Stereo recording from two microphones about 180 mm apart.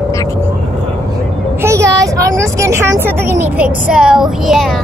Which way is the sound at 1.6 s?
15° right (ahead or behind).